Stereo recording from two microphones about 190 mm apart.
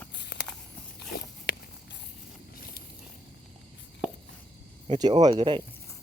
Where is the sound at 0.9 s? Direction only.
55° left (ahead or behind).